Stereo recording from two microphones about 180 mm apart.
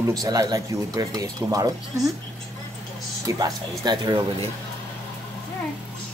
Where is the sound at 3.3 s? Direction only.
20° right (ahead or behind).